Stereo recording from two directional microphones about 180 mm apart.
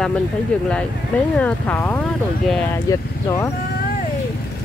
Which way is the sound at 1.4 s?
10° left (ahead or behind).